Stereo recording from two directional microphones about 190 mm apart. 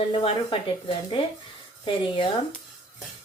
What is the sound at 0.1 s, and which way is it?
Speech, 25° left (ahead or behind).